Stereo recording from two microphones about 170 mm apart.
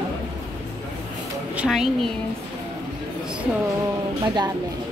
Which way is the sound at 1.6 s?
Centre (ahead or behind).